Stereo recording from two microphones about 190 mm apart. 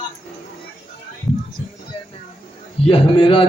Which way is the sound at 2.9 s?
30° left (ahead or behind).